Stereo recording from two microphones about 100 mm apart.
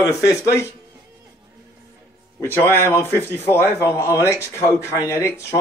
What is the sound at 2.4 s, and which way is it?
A man's voice, 25° left (ahead or behind).